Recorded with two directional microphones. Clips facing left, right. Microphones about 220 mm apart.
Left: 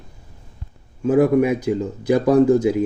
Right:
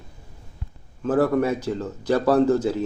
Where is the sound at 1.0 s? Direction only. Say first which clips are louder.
Left 5 dB; 15° left (ahead or behind).